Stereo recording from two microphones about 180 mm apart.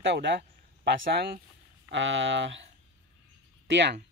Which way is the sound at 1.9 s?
90° right.